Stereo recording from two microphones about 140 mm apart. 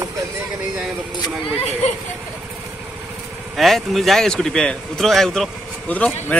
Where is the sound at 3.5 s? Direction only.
Centre (ahead or behind).